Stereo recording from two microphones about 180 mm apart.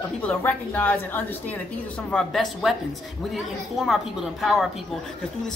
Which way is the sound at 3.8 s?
5° right (ahead or behind).